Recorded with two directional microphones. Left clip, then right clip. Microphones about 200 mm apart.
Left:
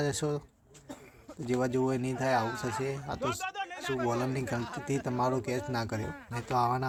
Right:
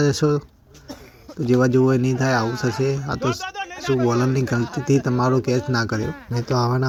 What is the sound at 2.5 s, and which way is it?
Speech, 15° left (ahead or behind).